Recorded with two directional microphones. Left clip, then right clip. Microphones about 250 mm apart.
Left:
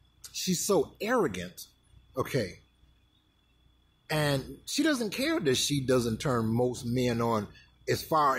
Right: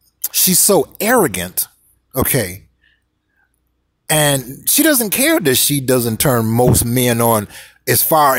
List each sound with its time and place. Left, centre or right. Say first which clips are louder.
0.2 s speech: right 16 dB; right
4.1 s speech: right 14 dB; right